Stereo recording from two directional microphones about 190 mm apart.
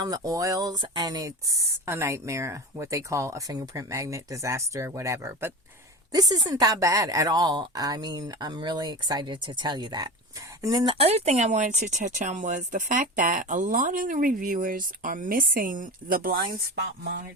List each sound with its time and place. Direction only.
0.0 s a woman's voice: 20° right (ahead or behind)
10.9 s speech: 35° right (ahead or behind); by 16.4 s 50° right (ahead or behind)